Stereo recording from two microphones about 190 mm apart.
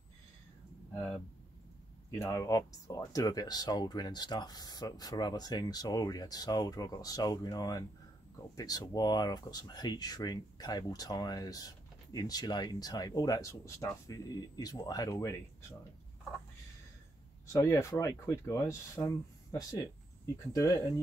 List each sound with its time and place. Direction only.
0.9 s speech: 5° left (ahead or behind)
17.5 s speech: 15° left (ahead or behind)